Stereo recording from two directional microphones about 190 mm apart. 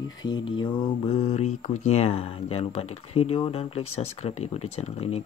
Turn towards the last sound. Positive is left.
turn(degrees=35)  # may be behind; listen again after turning